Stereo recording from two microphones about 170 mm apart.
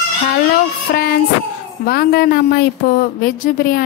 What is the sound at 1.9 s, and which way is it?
A woman's voice, 65° left (ahead or behind).